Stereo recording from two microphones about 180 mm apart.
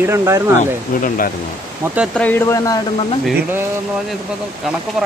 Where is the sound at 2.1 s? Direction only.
10° left (ahead or behind).